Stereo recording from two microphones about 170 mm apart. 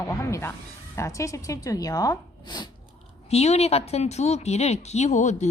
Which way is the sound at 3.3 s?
40° left (ahead or behind).